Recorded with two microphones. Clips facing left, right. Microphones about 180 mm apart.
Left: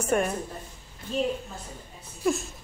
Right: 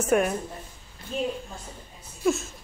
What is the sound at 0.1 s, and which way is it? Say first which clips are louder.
Speech: right 3 dB; 5° right (ahead or behind).